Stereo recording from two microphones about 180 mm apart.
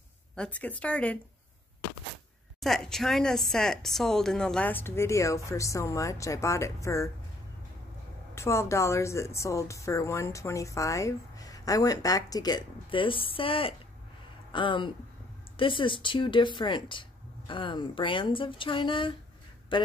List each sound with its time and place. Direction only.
0.4 s a woman's voice: 10° left (ahead or behind)
2.6 s a woman's voice: centre (ahead or behind)
8.4 s a woman's voice: 15° left (ahead or behind)